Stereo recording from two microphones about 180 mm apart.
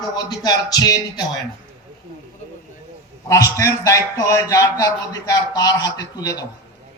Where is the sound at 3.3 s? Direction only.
15° left (ahead or behind).